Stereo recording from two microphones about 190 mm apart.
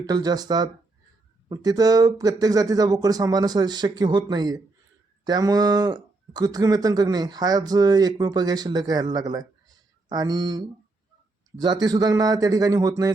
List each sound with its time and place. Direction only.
0.0 s speech: 20° right (ahead or behind)
11.6 s speech: 20° right (ahead or behind)